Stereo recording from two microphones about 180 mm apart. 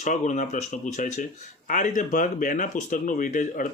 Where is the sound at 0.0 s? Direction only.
45° left (ahead or behind).